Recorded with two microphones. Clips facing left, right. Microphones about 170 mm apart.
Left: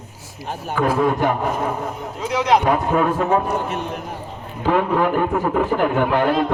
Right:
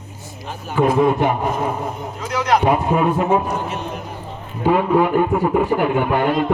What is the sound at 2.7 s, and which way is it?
Speech, 15° right (ahead or behind).